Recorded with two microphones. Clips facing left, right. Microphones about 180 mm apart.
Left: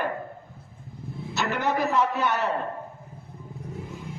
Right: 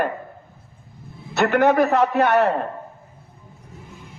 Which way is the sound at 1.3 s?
60° right (ahead or behind).